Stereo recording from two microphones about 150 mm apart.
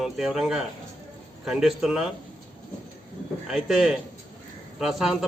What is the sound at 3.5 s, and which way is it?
A man's voice, centre (ahead or behind).